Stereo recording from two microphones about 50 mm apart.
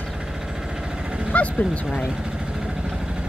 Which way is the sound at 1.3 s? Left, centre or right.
Left.